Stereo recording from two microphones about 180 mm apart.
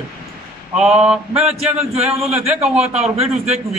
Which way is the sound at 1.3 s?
35° right (ahead or behind).